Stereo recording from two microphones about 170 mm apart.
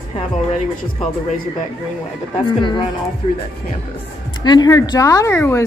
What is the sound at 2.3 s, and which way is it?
Speech, 30° left (ahead or behind).